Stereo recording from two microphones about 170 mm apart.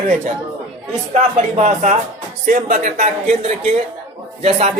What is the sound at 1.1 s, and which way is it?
Speech, 40° right (ahead or behind).